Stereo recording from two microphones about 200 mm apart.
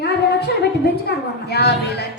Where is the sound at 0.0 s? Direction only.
55° left (ahead or behind).